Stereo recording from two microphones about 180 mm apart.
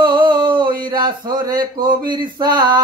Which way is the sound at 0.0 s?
25° right (ahead or behind).